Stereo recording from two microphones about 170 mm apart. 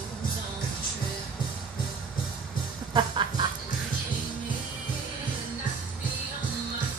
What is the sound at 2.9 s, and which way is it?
Music, 30° right (ahead or behind).